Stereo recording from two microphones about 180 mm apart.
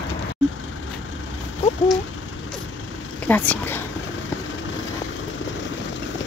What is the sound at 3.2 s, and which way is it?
Speech, 10° left (ahead or behind).